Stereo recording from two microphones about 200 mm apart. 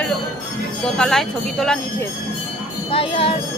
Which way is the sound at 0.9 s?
Centre (ahead or behind).